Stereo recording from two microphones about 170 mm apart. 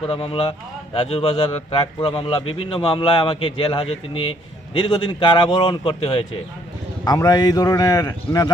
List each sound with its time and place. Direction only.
0.1 s a man's voice: 35° left (ahead or behind)
7.0 s a man's voice: 20° left (ahead or behind)